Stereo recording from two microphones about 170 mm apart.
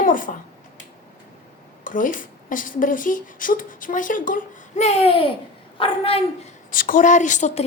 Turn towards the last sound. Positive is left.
turn(degrees=45)  # may be behind; listen again after turning